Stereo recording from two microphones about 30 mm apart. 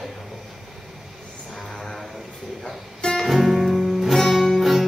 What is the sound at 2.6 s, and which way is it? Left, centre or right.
Music, left.